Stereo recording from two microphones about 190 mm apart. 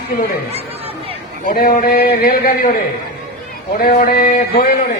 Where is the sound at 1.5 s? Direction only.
50° left (ahead or behind).